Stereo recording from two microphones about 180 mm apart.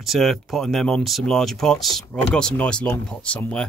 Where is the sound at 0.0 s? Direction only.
Centre (ahead or behind).